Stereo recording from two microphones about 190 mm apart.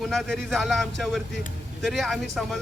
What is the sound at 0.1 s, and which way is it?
Speech, centre (ahead or behind).